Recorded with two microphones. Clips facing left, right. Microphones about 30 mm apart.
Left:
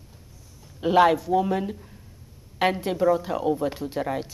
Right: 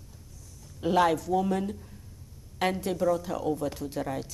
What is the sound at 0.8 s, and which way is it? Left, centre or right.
A woman's voice, left.